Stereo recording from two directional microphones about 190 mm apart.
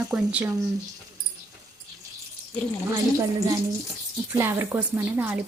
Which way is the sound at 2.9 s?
15° right (ahead or behind).